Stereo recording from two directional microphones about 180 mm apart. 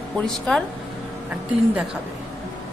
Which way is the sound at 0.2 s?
5° left (ahead or behind).